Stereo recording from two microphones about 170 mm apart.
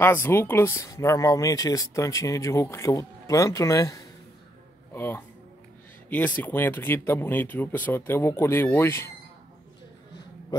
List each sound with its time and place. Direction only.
0.0 s a man's voice: 15° left (ahead or behind)